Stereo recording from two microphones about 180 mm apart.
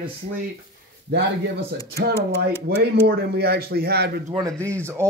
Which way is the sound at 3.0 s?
60° right (ahead or behind).